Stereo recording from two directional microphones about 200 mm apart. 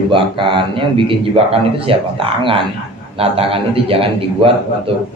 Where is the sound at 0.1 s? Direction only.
25° right (ahead or behind).